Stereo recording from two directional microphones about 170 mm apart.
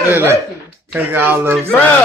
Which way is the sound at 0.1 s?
15° right (ahead or behind).